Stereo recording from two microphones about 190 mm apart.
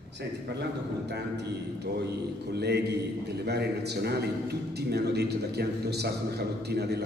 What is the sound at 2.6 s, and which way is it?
A man's voice, 60° right (ahead or behind).